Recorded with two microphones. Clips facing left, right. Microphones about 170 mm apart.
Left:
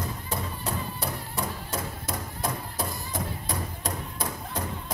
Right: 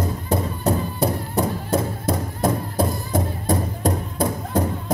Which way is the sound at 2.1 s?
55° right (ahead or behind).